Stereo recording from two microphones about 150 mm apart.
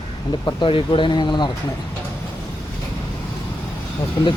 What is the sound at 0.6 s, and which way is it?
Speech, 35° left (ahead or behind).